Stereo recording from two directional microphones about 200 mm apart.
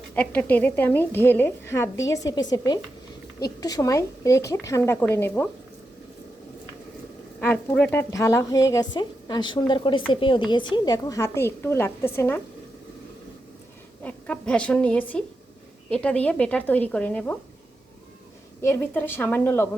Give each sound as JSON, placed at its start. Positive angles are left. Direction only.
{"t": 0.1, "sound": "a woman's voice", "side_deg": 10}
{"t": 7.4, "sound": "a woman's voice", "side_deg": 5}
{"t": 14.0, "sound": "a woman's voice", "side_deg": 5}
{"t": 18.6, "sound": "a woman's voice", "side_deg": 10}